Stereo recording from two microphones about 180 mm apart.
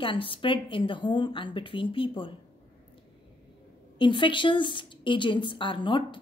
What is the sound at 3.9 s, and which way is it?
Speech, 25° left (ahead or behind).